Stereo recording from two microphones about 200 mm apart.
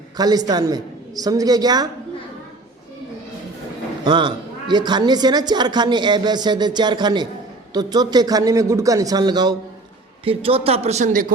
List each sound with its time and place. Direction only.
0.2 s a man's voice: 20° right (ahead or behind)
4.0 s a man's voice: 20° right (ahead or behind); by 11.3 s 40° right (ahead or behind)